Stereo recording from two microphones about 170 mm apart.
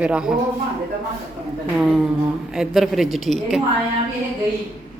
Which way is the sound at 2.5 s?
Centre (ahead or behind).